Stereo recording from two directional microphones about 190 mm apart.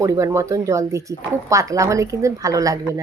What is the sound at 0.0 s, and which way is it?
Speech, 15° right (ahead or behind).